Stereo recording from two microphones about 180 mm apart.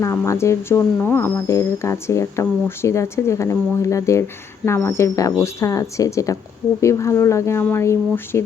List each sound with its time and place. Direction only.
0.0 s a woman's voice: 15° left (ahead or behind)